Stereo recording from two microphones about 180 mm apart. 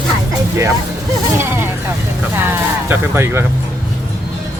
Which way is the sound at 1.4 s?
15° right (ahead or behind).